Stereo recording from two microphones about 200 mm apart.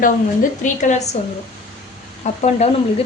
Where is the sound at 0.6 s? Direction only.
35° left (ahead or behind).